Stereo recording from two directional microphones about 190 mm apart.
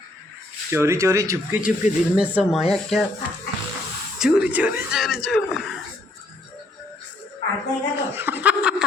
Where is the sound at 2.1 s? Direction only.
5° right (ahead or behind).